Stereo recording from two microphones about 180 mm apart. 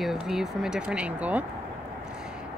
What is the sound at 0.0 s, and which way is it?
Speech, centre (ahead or behind).